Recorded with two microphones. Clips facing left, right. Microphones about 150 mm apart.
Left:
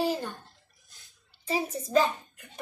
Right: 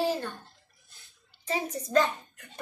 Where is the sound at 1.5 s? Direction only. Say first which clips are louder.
Left 1 dB; 10° left (ahead or behind).